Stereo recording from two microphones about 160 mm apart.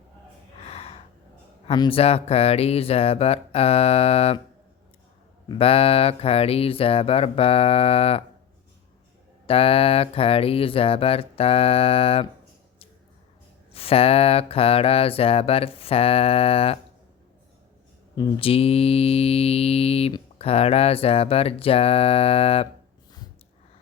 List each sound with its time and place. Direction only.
0.6 s gasp: 40° left (ahead or behind)
1.6 s speech: 30° left (ahead or behind)
5.5 s speech: 35° left (ahead or behind)
9.5 s speech: 35° left (ahead or behind)
13.7 s speech: 35° left (ahead or behind)
18.2 s speech: 35° left (ahead or behind)